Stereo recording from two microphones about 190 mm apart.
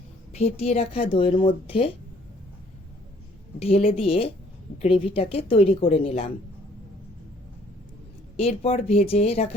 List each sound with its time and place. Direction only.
0.3 s speech: 35° left (ahead or behind)
3.6 s speech: 30° left (ahead or behind)
8.4 s speech: 30° left (ahead or behind)